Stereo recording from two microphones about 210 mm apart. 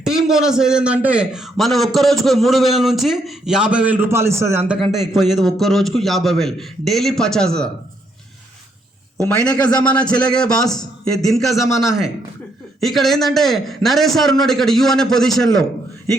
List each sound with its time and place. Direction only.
0.0 s a man's voice: centre (ahead or behind)
4.8 s a man's voice: centre (ahead or behind)
9.6 s a man's voice: 5° left (ahead or behind)